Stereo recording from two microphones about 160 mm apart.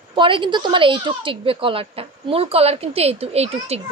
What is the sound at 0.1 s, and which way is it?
A woman's voice, 30° right (ahead or behind).